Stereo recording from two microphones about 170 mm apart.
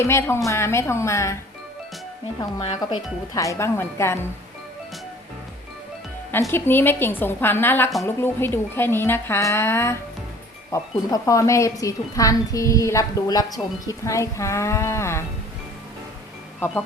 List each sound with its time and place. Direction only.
0.0 s speech: 15° left (ahead or behind)
2.6 s speech: 30° left (ahead or behind)
3.3 s speech: 20° left (ahead or behind)
6.5 s speech: 10° left (ahead or behind)